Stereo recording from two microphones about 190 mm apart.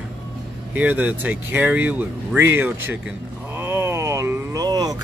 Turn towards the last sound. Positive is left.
turn(degrees=-20)  # may be behind; listen again after turning